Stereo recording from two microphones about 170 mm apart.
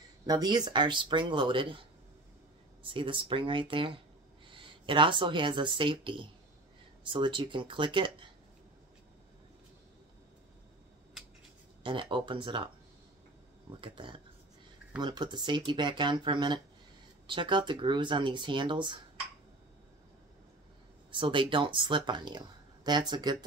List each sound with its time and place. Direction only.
0.3 s speech: 25° right (ahead or behind)
11.8 s speech: 30° right (ahead or behind)
13.7 s speech: 30° right (ahead or behind)
21.1 s speech: 30° right (ahead or behind)